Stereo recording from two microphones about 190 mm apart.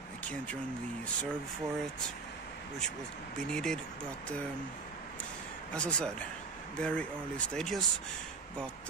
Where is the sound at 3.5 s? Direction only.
5° left (ahead or behind).